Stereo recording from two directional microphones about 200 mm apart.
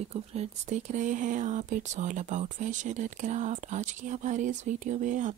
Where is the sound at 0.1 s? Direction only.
35° right (ahead or behind).